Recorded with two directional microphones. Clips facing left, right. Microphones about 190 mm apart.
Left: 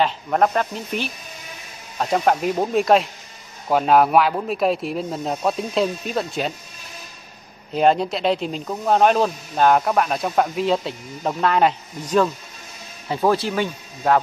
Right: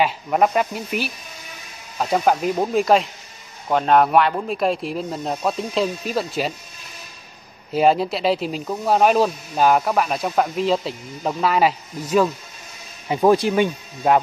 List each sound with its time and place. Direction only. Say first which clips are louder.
0.0 s speech: even; 5° right (ahead or behind)
7.7 s speech: even; 5° right (ahead or behind)
13.1 s speech: right 4 dB; 15° right (ahead or behind)